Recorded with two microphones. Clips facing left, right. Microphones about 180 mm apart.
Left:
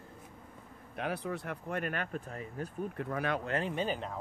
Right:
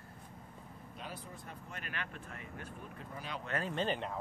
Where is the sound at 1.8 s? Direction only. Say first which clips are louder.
Left 9 dB; 45° left (ahead or behind).